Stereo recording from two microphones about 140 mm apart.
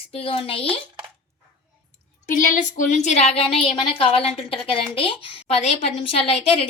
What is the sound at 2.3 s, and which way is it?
A woman's voice, 70° left (ahead or behind).